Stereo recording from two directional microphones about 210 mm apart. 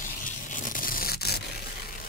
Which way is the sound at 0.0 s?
40° left (ahead or behind).